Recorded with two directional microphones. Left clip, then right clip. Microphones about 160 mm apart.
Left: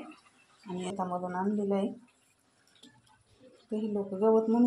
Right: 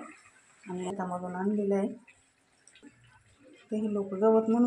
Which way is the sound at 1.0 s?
15° right (ahead or behind).